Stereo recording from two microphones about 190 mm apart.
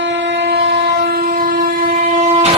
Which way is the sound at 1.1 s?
50° right (ahead or behind).